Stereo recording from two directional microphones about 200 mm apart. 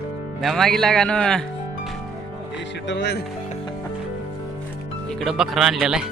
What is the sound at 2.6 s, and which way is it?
Speech, 60° left (ahead or behind).